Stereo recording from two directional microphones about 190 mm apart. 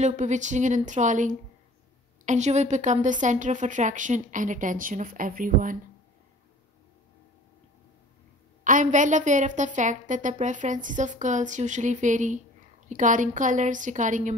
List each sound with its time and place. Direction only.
0.0 s a woman's voice: 40° right (ahead or behind)
8.6 s a woman's voice: 45° right (ahead or behind)